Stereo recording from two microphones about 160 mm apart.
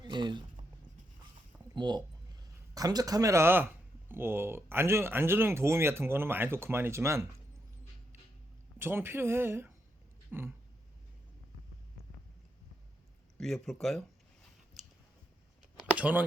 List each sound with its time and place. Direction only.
0.0 s a sound: 30° right (ahead or behind)
1.7 s speech: 25° right (ahead or behind)
8.8 s speech: 15° right (ahead or behind)
13.4 s speech: centre (ahead or behind)
16.0 s speech: 10° right (ahead or behind)